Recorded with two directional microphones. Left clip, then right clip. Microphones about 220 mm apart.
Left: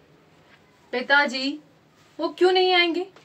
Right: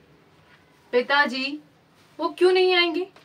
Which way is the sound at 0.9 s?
Centre (ahead or behind).